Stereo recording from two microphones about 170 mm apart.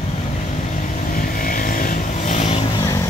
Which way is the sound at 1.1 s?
55° left (ahead or behind).